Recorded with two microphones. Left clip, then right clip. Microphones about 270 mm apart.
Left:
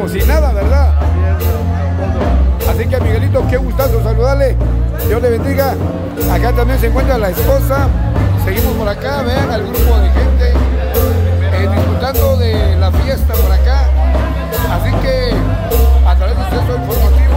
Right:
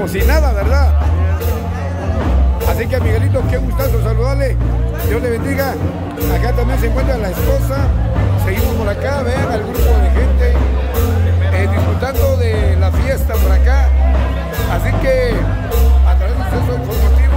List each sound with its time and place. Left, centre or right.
0.0 s speech: centre
2.8 s speech: centre
11.5 s speech: centre
15.0 s speech: centre